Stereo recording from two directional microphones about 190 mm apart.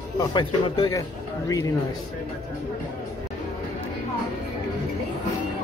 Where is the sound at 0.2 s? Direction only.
25° left (ahead or behind).